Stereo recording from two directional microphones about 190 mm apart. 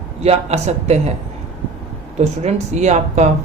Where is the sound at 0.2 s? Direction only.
35° right (ahead or behind).